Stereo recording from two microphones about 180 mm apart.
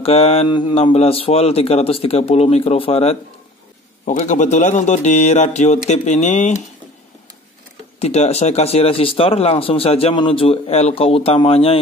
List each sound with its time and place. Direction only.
0.0 s speech: 35° left (ahead or behind)
4.0 s speech: 45° left (ahead or behind)
8.0 s speech: 35° left (ahead or behind)